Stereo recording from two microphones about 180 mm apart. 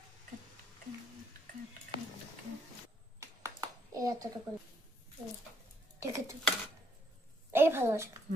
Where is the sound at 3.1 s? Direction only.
20° right (ahead or behind).